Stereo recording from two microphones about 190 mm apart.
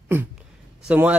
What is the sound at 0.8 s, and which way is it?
Speech, 10° right (ahead or behind).